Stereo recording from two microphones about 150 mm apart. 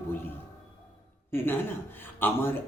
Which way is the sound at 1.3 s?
15° left (ahead or behind).